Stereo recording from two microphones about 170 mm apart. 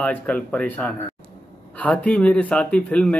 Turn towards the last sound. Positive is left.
turn(degrees=5)  # may be behind; listen again after turning